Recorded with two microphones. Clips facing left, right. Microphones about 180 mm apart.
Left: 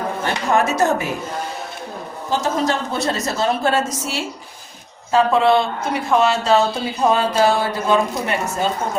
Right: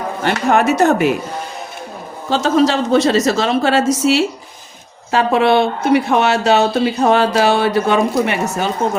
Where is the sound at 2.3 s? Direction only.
80° right.